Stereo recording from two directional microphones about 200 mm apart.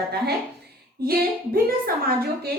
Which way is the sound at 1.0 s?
50° right (ahead or behind).